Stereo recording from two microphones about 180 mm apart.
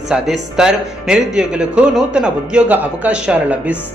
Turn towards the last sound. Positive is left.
turn(degrees=-5)  # may be behind; listen again after turning